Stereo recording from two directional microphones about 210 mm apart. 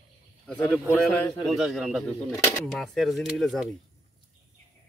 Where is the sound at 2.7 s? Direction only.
Centre (ahead or behind).